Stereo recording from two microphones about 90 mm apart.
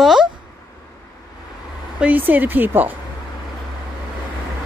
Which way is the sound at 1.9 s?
20° right (ahead or behind).